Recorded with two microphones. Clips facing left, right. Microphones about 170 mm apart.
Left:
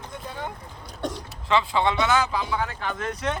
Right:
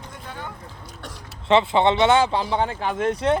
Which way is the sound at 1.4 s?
25° right (ahead or behind).